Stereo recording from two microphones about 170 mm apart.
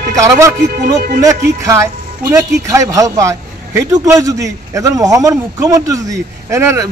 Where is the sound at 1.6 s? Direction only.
15° right (ahead or behind).